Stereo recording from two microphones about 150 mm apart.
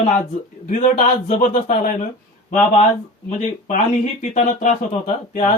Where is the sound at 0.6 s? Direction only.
55° left (ahead or behind).